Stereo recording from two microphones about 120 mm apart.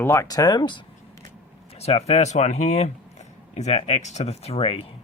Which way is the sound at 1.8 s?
60° left (ahead or behind).